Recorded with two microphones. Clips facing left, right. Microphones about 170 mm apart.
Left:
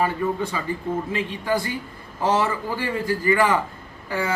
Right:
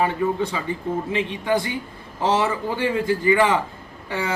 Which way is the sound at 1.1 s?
20° right (ahead or behind).